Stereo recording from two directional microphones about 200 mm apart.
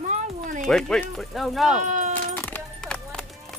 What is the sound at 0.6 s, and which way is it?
Speech, centre (ahead or behind).